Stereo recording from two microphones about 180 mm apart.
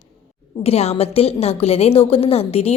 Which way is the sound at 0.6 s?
35° left (ahead or behind).